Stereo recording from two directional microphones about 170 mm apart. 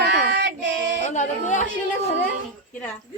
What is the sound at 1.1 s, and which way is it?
Music, 45° left (ahead or behind).